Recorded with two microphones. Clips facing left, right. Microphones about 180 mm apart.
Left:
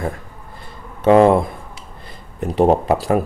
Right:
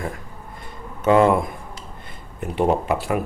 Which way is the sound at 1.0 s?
30° left (ahead or behind).